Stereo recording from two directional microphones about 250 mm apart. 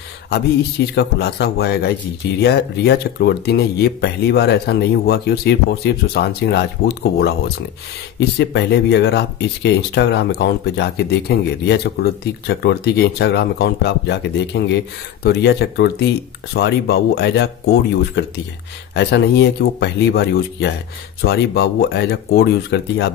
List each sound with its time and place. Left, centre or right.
0.9 s speech: left